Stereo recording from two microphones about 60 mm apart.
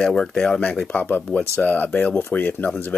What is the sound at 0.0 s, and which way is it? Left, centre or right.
Speech, centre.